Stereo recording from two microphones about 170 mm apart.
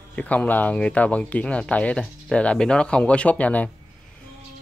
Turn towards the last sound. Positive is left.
turn(degrees=10)  # may be behind; listen again after turning